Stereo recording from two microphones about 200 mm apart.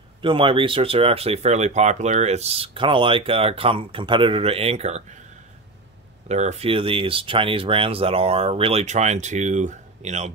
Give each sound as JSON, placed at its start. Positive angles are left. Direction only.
{"t": 0.2, "sound": "speech", "side_deg": -25}
{"t": 6.2, "sound": "speech", "side_deg": -35}